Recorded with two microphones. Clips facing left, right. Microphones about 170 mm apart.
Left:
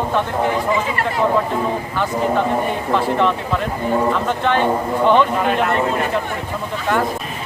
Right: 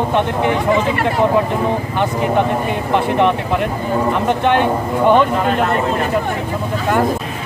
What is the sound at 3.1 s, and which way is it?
Speech, 15° right (ahead or behind).